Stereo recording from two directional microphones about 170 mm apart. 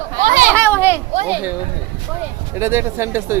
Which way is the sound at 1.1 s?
40° right (ahead or behind).